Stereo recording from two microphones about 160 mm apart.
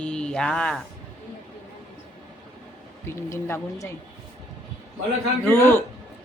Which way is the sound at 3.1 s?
15° left (ahead or behind).